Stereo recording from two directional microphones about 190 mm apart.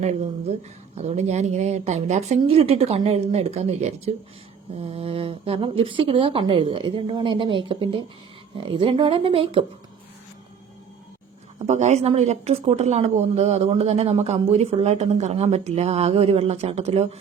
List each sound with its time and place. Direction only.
0.0 s speech: 35° right (ahead or behind)
11.6 s speech: 35° right (ahead or behind)